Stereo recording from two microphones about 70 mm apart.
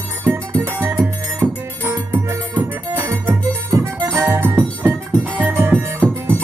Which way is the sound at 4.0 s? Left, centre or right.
Right.